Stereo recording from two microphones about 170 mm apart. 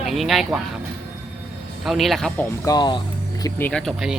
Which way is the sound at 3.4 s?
10° left (ahead or behind).